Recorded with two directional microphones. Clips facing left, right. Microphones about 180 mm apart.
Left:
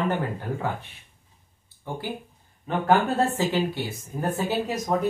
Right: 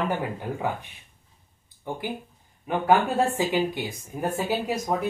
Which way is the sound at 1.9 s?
15° right (ahead or behind).